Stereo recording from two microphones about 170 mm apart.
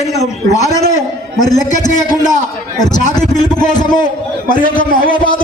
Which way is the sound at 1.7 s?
45° left (ahead or behind).